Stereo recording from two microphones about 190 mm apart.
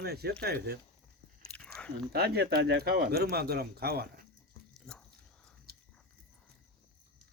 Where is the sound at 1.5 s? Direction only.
5° left (ahead or behind).